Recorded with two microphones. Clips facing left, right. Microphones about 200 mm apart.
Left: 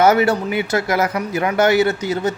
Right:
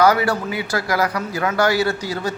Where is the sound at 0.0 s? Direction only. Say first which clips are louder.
Left 2 dB; 25° left (ahead or behind).